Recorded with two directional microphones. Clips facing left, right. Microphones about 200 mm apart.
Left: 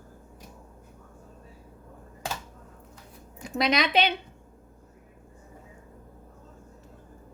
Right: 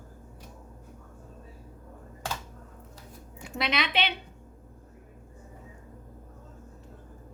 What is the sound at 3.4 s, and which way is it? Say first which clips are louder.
Speech: left 5 dB; 40° left (ahead or behind).